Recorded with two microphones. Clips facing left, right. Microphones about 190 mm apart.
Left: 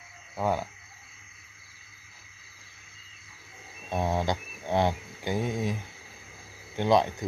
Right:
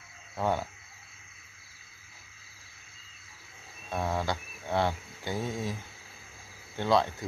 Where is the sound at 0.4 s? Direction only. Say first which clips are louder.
Left 1 dB; 5° left (ahead or behind).